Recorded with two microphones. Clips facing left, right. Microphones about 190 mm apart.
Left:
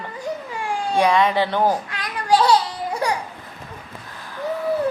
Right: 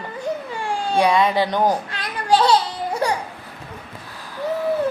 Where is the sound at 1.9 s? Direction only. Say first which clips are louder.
Even; 25° right (ahead or behind).